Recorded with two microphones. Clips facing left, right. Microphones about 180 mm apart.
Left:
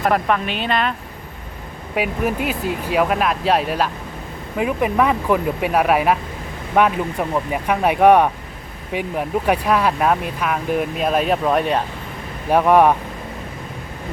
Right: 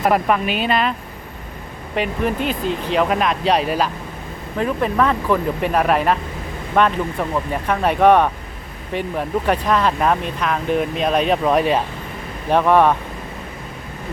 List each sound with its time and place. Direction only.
0.0 s speech: 5° right (ahead or behind)
2.0 s speech: 10° left (ahead or behind)
4.5 s speech: 10° left (ahead or behind)
12.5 s speech: 10° left (ahead or behind)